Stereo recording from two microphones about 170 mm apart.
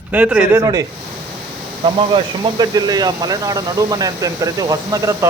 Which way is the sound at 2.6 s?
25° right (ahead or behind).